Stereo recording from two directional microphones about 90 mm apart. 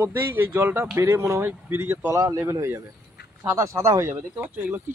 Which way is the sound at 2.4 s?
25° right (ahead or behind).